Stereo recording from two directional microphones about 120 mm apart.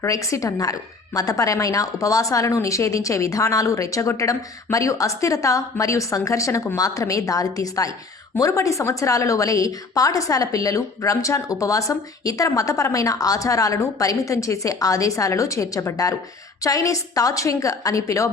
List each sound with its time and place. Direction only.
0.0 s a woman's voice: 25° left (ahead or behind)